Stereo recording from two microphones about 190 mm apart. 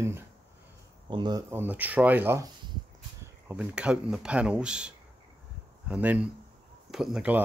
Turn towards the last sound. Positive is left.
turn(degrees=-5)  # may be behind; listen again after turning